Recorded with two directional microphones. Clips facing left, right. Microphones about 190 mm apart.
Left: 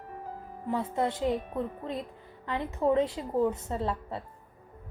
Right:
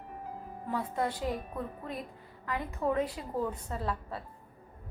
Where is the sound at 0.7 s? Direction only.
25° left (ahead or behind).